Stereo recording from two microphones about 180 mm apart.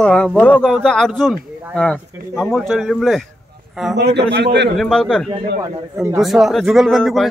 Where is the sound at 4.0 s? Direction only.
70° right (ahead or behind).